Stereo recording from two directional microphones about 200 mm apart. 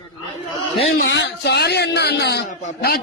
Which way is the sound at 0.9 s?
60° left (ahead or behind).